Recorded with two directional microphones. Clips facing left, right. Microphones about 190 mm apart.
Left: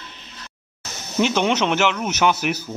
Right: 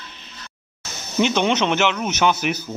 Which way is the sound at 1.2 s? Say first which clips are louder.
Even; 5° left (ahead or behind).